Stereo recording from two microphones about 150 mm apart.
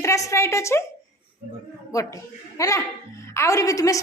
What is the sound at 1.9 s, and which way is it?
A woman's voice, 20° left (ahead or behind).